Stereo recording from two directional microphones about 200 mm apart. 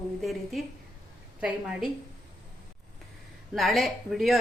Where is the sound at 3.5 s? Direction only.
Centre (ahead or behind).